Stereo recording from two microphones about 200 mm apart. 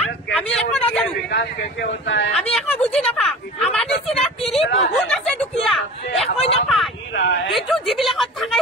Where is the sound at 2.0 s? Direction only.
65° left (ahead or behind).